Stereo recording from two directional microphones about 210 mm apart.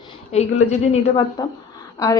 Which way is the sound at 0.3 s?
30° left (ahead or behind).